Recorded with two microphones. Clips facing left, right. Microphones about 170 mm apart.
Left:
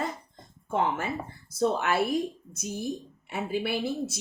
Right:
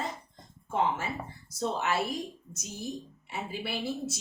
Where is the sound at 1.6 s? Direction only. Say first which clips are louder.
Left 5 dB; 55° left (ahead or behind).